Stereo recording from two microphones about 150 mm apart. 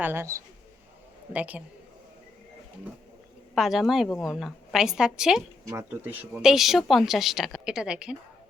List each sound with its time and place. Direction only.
0.0 s speech: 15° right (ahead or behind)
3.5 s a woman's voice: centre (ahead or behind)
6.4 s a woman's voice: centre (ahead or behind)